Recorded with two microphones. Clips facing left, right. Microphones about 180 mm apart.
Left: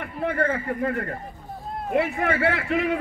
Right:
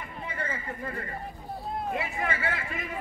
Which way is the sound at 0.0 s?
65° left (ahead or behind).